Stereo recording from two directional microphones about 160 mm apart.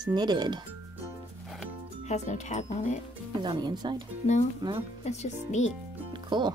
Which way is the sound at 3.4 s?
25° right (ahead or behind).